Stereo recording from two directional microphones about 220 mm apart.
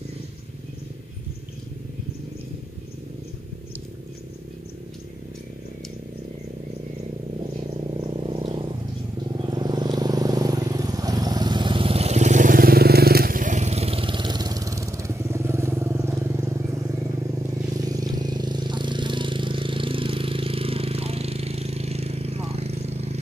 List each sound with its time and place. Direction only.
8.2 s frog: 25° right (ahead or behind)
9.4 s vehicle: 20° right (ahead or behind)